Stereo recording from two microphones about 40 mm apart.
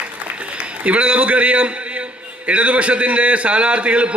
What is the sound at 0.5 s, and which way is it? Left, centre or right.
A man's voice, right.